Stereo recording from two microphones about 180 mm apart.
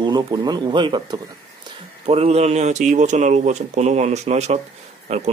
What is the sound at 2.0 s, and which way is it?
Speech, 35° right (ahead or behind).